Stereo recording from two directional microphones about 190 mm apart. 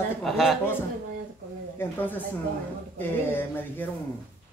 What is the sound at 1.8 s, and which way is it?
Speech, 10° left (ahead or behind).